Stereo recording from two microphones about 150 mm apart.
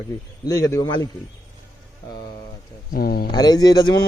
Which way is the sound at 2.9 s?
90° left.